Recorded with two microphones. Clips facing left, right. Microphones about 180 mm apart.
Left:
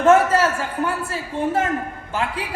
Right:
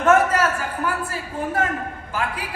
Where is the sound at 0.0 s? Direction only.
30° left (ahead or behind).